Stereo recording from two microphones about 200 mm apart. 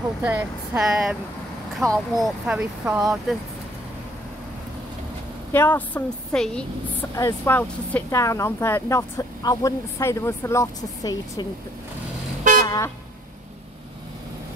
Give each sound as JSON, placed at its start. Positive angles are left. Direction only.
{"t": 0.2, "sound": "speech", "side_deg": -5}
{"t": 1.8, "sound": "speech", "side_deg": -15}
{"t": 2.1, "sound": "speech", "side_deg": -5}
{"t": 5.5, "sound": "speech", "side_deg": 10}
{"t": 12.6, "sound": "vehicle", "side_deg": 15}